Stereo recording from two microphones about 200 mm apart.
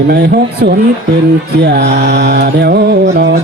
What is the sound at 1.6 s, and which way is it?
Mantra, 55° right (ahead or behind).